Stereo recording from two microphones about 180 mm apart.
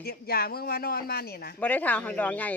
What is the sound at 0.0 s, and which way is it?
A woman's voice, 60° left (ahead or behind).